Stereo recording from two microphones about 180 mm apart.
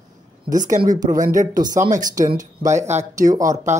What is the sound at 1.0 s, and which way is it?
Speech, 45° right (ahead or behind).